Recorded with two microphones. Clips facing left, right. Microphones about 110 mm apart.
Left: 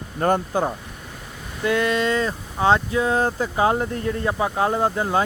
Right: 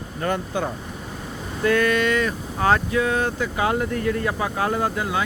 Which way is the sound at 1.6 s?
20° left (ahead or behind).